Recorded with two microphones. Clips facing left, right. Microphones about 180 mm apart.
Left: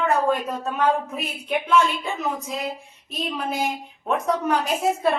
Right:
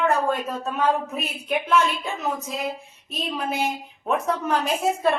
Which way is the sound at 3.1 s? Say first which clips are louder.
Even; centre (ahead or behind).